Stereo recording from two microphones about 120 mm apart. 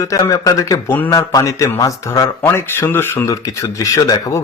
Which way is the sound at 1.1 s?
30° left (ahead or behind).